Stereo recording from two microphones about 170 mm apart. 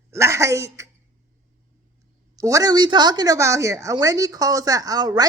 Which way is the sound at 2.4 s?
20° right (ahead or behind).